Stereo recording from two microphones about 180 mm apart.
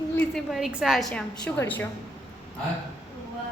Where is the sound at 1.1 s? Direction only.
10° left (ahead or behind).